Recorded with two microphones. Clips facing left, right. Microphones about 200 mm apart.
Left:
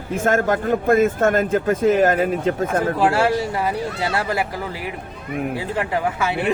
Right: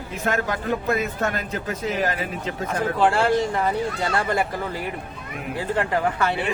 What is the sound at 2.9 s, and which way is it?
Speech, 5° left (ahead or behind).